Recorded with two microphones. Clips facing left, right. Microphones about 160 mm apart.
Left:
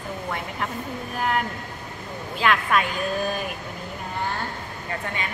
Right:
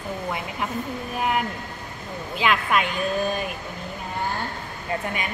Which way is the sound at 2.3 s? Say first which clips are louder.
Even; 5° right (ahead or behind).